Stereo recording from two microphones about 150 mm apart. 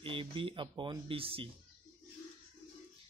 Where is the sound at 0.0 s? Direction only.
35° right (ahead or behind).